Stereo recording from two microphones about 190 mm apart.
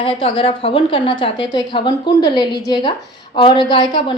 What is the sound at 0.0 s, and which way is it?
A woman's voice, 30° left (ahead or behind).